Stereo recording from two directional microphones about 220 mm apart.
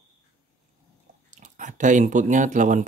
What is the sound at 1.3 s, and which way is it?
Speech, 35° right (ahead or behind).